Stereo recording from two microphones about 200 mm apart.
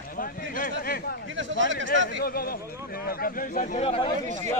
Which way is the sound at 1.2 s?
70° right (ahead or behind).